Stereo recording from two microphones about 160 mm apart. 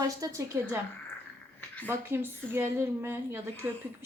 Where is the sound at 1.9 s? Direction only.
15° right (ahead or behind).